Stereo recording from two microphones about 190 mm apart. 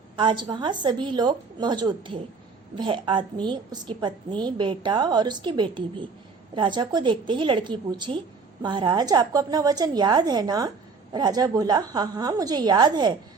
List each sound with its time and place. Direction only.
0.2 s a woman's voice: 25° right (ahead or behind)